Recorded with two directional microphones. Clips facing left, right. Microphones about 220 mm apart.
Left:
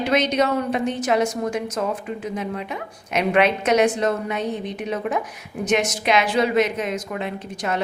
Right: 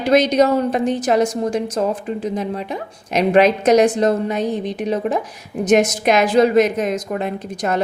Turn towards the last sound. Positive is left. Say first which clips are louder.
# right 5 dB
turn(degrees=-45)  # may be behind; listen again after turning